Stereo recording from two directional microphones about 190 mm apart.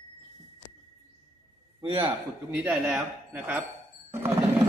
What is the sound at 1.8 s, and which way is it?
Speech, 25° right (ahead or behind).